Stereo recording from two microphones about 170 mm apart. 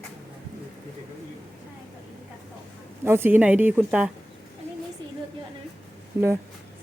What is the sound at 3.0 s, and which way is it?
A woman's voice, 15° right (ahead or behind).